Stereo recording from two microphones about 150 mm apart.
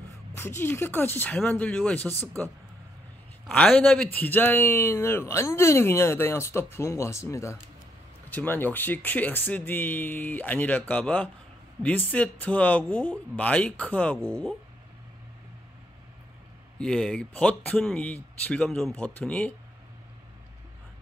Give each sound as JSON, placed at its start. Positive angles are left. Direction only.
{"t": 0.4, "sound": "a man's voice", "side_deg": 15}
{"t": 3.4, "sound": "a man's voice", "side_deg": 5}
{"t": 16.7, "sound": "a man's voice", "side_deg": 5}